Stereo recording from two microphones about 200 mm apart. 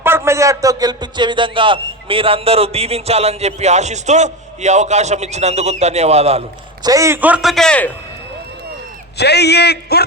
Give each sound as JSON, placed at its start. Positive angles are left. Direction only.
{"t": 0.0, "sound": "a man's voice", "side_deg": -10}
{"t": 6.8, "sound": "a man's voice", "side_deg": -15}
{"t": 9.1, "sound": "a man's voice", "side_deg": 55}